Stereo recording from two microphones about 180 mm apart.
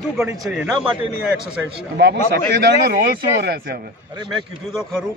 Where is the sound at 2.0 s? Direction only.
70° right (ahead or behind).